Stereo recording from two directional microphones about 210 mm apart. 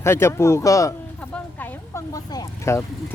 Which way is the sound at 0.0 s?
10° left (ahead or behind).